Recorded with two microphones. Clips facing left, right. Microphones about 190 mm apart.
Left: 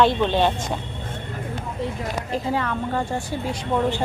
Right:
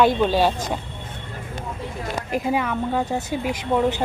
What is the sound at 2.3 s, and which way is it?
Speech, 15° right (ahead or behind).